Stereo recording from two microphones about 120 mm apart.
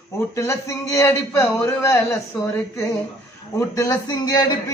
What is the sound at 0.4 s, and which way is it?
A man's voice, 25° left (ahead or behind).